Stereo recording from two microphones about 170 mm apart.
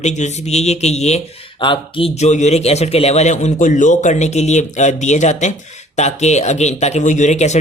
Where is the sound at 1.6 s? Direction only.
30° left (ahead or behind).